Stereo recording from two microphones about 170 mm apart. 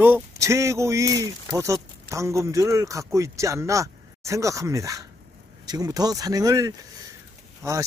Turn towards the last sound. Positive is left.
turn(degrees=-15)  # may be behind; listen again after turning